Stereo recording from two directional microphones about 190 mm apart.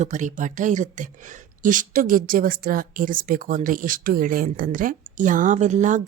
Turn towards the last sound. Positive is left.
turn(degrees=-40)  # may be behind; listen again after turning